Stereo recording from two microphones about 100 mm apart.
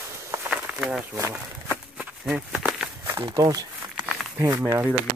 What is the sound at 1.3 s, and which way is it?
Walk, 20° right (ahead or behind).